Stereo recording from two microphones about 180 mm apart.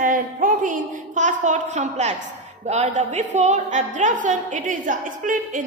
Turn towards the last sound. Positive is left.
turn(degrees=-45)  # may be behind; listen again after turning